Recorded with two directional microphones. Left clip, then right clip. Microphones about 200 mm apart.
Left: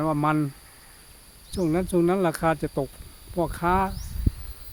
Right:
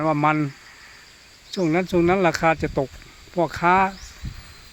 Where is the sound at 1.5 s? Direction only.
10° right (ahead or behind).